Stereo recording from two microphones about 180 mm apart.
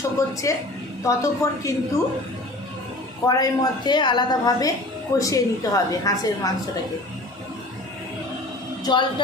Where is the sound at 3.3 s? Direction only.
25° left (ahead or behind).